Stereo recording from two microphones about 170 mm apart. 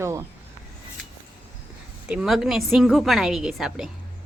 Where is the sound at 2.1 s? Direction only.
5° right (ahead or behind).